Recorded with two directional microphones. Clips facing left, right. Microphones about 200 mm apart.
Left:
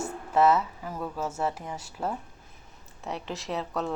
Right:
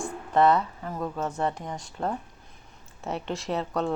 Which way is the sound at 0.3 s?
5° left (ahead or behind).